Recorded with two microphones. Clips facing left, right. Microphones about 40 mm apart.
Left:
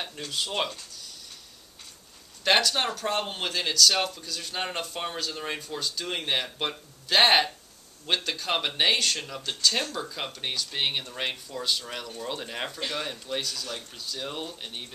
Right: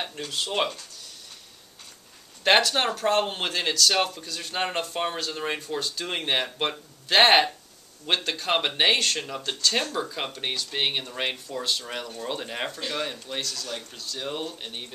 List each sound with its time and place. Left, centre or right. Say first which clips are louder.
0.0 s speech: right 2 dB; centre
2.4 s speech: right 3 dB; centre
13.4 s speech: right 1 dB; centre
14.1 s speech: right 3 dB; centre